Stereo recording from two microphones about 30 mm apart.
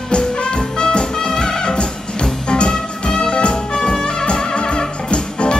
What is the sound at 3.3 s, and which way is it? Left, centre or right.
Music, left.